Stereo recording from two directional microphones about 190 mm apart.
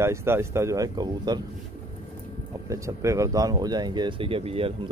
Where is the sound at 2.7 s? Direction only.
15° right (ahead or behind).